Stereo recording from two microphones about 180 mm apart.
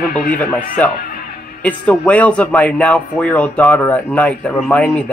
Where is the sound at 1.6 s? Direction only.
10° left (ahead or behind).